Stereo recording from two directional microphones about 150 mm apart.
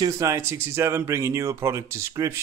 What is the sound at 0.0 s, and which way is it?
Speech, 20° right (ahead or behind).